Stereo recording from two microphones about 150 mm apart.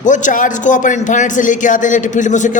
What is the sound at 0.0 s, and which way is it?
A man's voice, 55° left (ahead or behind).